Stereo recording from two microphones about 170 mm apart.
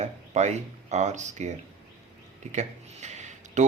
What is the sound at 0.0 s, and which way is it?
Speech, 40° right (ahead or behind).